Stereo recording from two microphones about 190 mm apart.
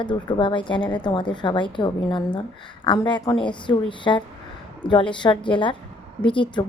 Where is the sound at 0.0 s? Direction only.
25° left (ahead or behind).